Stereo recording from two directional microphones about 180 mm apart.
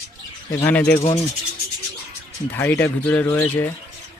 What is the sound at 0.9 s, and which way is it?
Rub, 35° left (ahead or behind).